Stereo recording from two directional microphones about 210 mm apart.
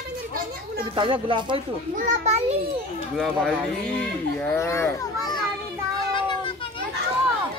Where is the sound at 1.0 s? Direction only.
25° right (ahead or behind).